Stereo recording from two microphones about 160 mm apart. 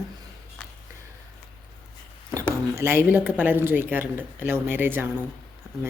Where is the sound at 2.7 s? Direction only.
15° right (ahead or behind).